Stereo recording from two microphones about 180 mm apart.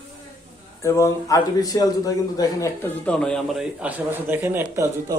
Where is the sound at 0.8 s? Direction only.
15° left (ahead or behind).